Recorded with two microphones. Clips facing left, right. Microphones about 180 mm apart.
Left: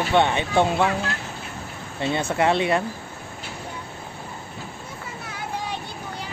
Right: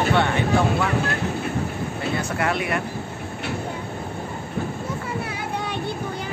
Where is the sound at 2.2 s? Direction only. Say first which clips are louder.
Left 5 dB; 25° left (ahead or behind).